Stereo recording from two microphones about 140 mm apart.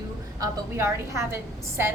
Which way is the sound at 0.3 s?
20° right (ahead or behind).